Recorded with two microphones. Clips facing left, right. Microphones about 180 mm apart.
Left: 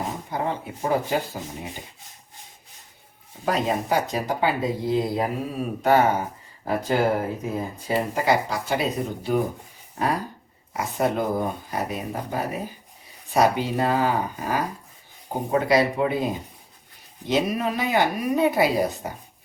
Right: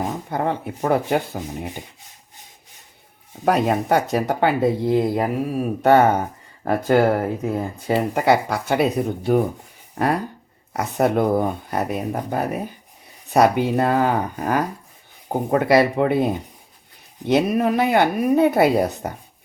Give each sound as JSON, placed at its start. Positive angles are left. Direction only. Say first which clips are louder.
{"t": 0.3, "sound": "speech", "louder": "right 3 dB", "side_deg": -60}
{"t": 3.4, "sound": "speech", "louder": "right 5 dB", "side_deg": -65}
{"t": 10.8, "sound": "speech", "louder": "right 5 dB", "side_deg": -60}